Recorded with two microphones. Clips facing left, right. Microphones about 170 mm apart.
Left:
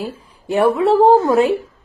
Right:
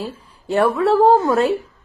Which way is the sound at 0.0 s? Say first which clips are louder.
Left 2 dB; 15° left (ahead or behind).